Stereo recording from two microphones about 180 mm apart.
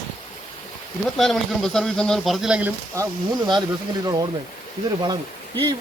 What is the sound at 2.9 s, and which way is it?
Speech, 20° right (ahead or behind).